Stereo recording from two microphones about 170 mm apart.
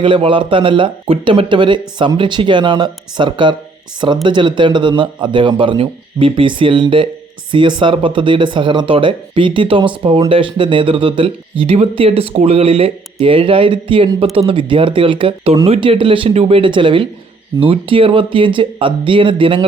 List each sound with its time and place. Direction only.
0.0 s a man's voice: 30° right (ahead or behind)